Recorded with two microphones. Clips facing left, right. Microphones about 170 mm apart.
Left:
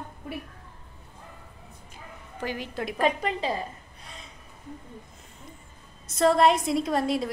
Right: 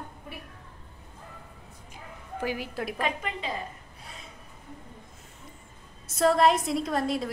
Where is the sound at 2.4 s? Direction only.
5° right (ahead or behind).